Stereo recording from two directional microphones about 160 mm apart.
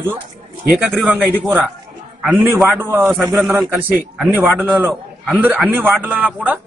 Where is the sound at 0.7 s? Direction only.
5° right (ahead or behind).